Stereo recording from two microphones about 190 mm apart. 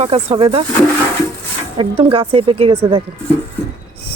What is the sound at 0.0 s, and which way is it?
Speech, 30° right (ahead or behind).